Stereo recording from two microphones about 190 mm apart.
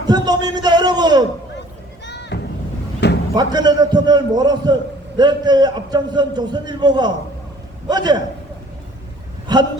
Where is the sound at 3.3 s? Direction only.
20° right (ahead or behind).